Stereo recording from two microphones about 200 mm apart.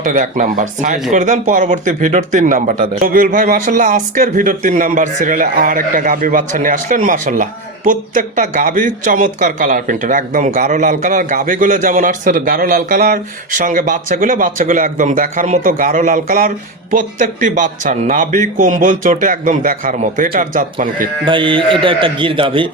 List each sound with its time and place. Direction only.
0.0 s a man's voice: 40° right (ahead or behind)
21.2 s a man's voice: 25° right (ahead or behind)